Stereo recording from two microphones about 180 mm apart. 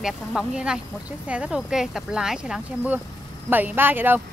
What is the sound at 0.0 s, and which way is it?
A woman's voice, 5° right (ahead or behind).